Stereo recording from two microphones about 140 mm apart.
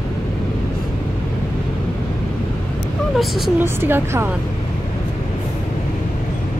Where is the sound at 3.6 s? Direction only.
15° right (ahead or behind).